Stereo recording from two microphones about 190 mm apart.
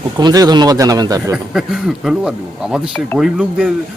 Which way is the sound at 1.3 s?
Centre (ahead or behind).